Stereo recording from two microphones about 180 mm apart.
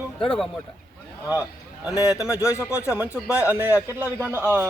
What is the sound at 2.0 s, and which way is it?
Speech, 20° left (ahead or behind).